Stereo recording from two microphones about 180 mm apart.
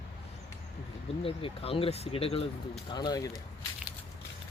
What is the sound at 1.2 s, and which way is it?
Speech, 30° left (ahead or behind).